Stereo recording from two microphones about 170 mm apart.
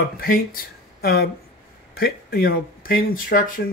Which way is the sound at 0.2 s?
60° left (ahead or behind).